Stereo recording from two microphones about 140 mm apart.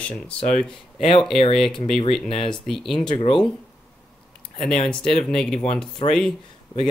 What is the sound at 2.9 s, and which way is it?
Speech, 35° left (ahead or behind).